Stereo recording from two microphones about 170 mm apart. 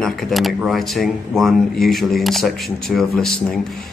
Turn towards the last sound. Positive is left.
turn(degrees=0)  # may be behind; listen again after turning